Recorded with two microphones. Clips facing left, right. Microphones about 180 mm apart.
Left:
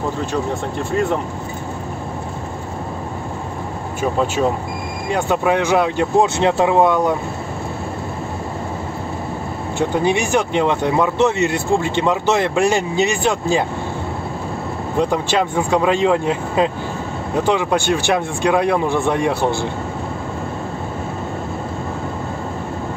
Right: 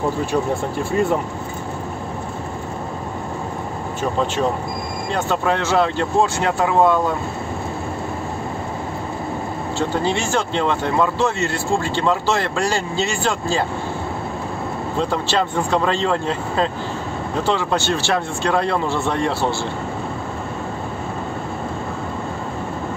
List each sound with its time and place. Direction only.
4.0 s speech: 5° left (ahead or behind)
9.8 s speech: 15° left (ahead or behind)
15.0 s speech: 15° left (ahead or behind)